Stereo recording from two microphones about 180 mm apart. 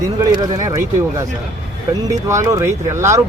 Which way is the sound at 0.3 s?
20° right (ahead or behind).